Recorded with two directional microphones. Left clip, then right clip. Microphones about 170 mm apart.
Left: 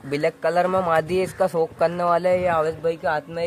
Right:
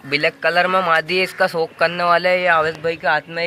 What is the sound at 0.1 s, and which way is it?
A man's voice, 25° left (ahead or behind).